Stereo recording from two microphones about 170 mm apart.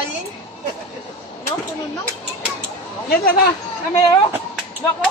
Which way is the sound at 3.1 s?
60° left (ahead or behind).